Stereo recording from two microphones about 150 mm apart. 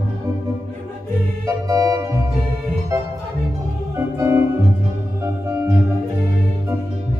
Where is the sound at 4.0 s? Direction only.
15° right (ahead or behind).